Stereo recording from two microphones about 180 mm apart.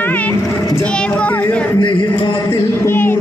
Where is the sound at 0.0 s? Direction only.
10° left (ahead or behind).